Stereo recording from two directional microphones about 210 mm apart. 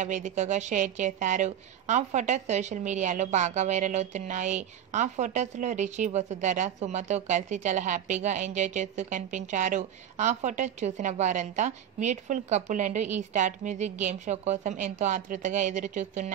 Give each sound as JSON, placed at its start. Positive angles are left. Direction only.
{"t": 0.0, "sound": "a woman's voice", "side_deg": -35}